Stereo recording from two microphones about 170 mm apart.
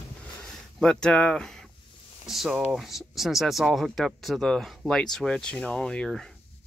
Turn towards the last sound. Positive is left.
turn(degrees=5)  # may be behind; listen again after turning